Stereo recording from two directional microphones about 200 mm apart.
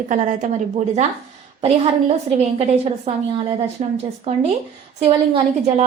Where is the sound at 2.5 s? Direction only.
30° right (ahead or behind).